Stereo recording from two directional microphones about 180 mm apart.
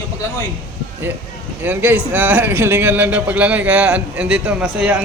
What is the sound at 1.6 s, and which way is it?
Speech, 10° right (ahead or behind).